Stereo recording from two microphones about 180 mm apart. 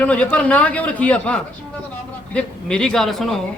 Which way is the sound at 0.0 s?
5° left (ahead or behind).